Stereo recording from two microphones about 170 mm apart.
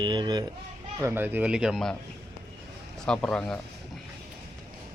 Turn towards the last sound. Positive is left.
turn(degrees=5)  # may be behind; listen again after turning